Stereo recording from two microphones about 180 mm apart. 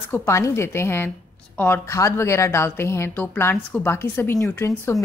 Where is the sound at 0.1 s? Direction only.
15° left (ahead or behind).